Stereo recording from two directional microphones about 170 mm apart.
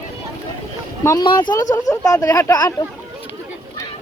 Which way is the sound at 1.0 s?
25° left (ahead or behind).